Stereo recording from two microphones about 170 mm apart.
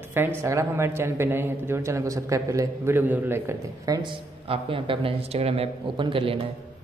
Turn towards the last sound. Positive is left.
turn(degrees=-30)  # may be behind; listen again after turning